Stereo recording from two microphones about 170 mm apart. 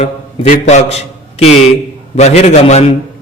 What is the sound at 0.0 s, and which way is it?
A man's voice, 45° left (ahead or behind).